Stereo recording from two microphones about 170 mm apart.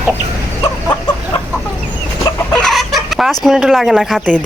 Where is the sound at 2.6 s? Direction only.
Centre (ahead or behind).